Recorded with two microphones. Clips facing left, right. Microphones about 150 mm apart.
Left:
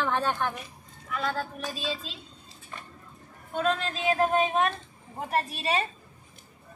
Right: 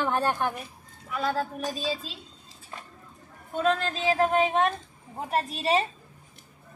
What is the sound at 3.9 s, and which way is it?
Speech, centre (ahead or behind).